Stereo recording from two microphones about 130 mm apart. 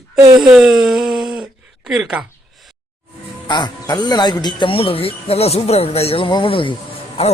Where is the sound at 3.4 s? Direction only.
35° left (ahead or behind).